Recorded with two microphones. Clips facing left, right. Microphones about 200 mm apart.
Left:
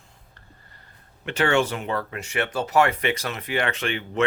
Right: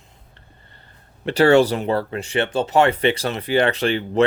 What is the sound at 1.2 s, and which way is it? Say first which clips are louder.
Speech: right 8 dB; 35° right (ahead or behind).